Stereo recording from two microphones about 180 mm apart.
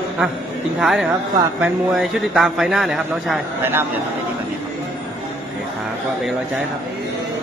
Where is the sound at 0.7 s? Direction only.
Centre (ahead or behind).